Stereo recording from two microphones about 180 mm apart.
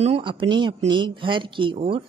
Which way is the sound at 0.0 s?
30° right (ahead or behind).